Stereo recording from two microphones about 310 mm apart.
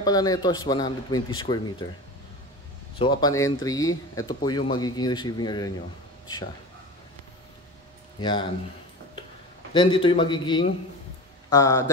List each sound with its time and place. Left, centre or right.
0.0 s speech: centre
3.0 s speech: centre
8.2 s speech: centre
9.8 s speech: centre